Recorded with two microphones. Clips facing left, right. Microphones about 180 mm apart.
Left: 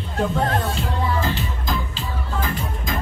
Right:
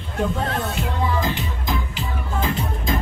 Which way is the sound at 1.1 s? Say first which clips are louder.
Even; 15° right (ahead or behind).